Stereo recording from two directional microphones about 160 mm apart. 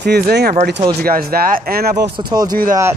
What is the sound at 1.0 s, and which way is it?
Speech, 70° right (ahead or behind).